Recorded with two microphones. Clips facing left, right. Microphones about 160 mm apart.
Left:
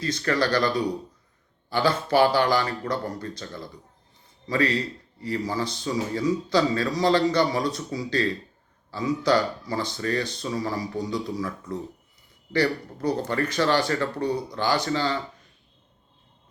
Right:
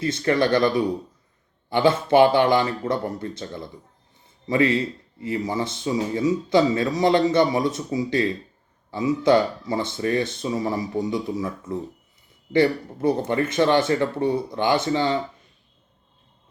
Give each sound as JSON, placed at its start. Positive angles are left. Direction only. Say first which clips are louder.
{"t": 0.0, "sound": "speech", "louder": "right 4 dB", "side_deg": -25}